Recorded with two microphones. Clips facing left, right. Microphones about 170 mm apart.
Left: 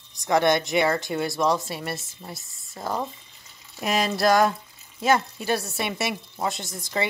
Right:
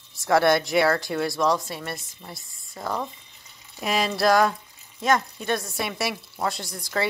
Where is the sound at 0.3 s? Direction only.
5° right (ahead or behind).